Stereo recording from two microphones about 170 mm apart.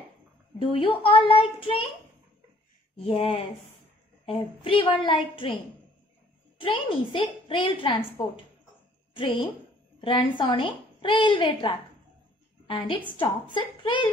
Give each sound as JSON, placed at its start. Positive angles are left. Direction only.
{"t": 0.6, "sound": "a child's voice", "side_deg": 30}
{"t": 3.0, "sound": "a child's voice", "side_deg": 35}
{"t": 6.6, "sound": "a woman's voice", "side_deg": 30}